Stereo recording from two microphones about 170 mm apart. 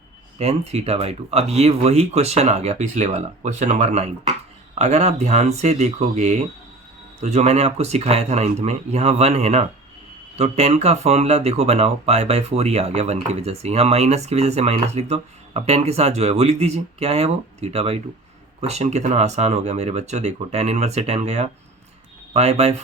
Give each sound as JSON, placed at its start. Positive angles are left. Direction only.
{"t": 0.3, "sound": "speech", "side_deg": -40}